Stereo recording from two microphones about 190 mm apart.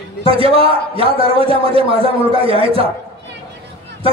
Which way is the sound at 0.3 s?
30° right (ahead or behind).